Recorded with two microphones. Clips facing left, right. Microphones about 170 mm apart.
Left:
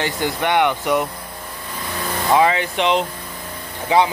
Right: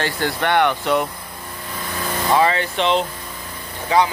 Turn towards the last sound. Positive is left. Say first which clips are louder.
# left 1 dB
turn(degrees=20)  # may be behind; listen again after turning